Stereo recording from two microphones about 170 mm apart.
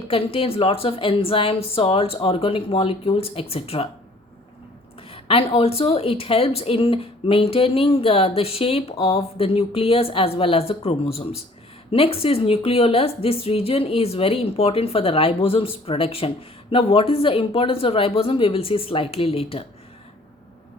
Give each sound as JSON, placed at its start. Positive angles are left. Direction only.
{"t": 0.1, "sound": "speech", "side_deg": 35}
{"t": 5.1, "sound": "speech", "side_deg": 35}